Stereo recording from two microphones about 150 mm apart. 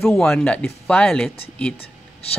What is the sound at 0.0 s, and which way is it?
Speech, centre (ahead or behind).